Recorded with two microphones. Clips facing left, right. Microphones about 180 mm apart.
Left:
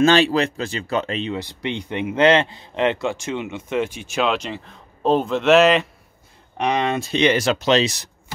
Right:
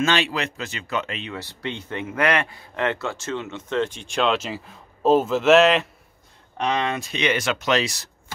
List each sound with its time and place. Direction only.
0.0 s speech: 35° left (ahead or behind)
1.3 s a man's voice: 15° left (ahead or behind); by 5.9 s centre (ahead or behind)
6.6 s speech: 20° left (ahead or behind)